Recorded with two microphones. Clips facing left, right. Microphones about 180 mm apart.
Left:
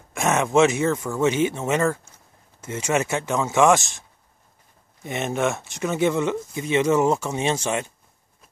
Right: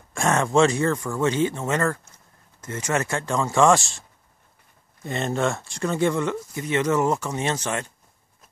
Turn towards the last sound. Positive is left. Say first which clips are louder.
# left 2 dB
turn(degrees=15)  # may be behind; listen again after turning